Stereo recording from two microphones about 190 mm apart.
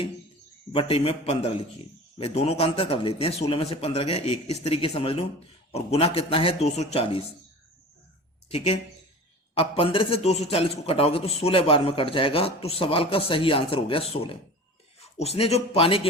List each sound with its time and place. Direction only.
0.7 s a man's voice: 30° left (ahead or behind)
8.4 s a man's voice: 30° left (ahead or behind)